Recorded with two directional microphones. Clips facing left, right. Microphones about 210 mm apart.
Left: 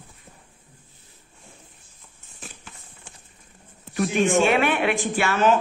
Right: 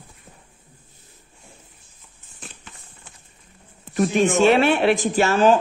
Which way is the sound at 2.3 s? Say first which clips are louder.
Even; centre (ahead or behind).